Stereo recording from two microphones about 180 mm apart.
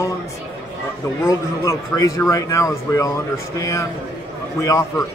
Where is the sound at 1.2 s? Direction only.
15° left (ahead or behind).